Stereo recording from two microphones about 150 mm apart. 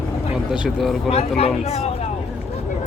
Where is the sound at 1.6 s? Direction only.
45° left (ahead or behind).